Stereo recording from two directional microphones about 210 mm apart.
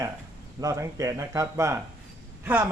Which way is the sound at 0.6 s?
15° right (ahead or behind).